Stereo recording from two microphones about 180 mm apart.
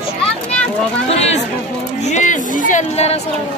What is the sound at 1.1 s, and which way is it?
Speech, 35° left (ahead or behind).